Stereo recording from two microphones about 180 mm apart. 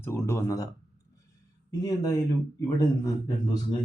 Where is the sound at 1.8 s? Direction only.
20° left (ahead or behind).